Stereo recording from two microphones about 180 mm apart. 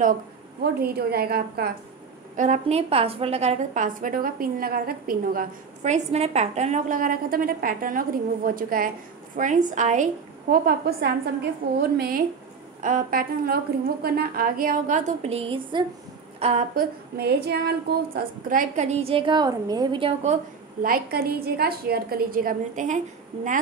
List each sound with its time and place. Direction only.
0.6 s a woman's voice: 60° right (ahead or behind)
2.3 s a woman's voice: 40° right (ahead or behind)
10.5 s a woman's voice: 60° right (ahead or behind); by 16.6 s 35° right (ahead or behind)
16.7 s a woman's voice: 60° right (ahead or behind)
18.9 s a woman's voice: 30° right (ahead or behind)
20.8 s a woman's voice: 55° right (ahead or behind)